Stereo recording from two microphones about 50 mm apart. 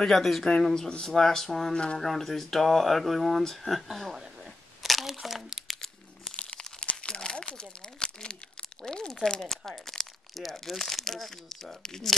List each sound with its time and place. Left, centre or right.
0.0 s speech: centre
4.8 s crumpling: centre
6.3 s crumpling: left
8.8 s speech: centre